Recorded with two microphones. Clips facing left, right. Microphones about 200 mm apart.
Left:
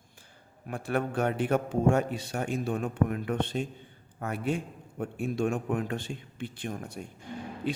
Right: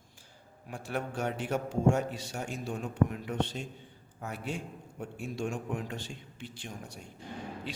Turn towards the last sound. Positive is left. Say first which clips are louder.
# left 6 dB
turn(degrees=55)  # may be behind; listen again after turning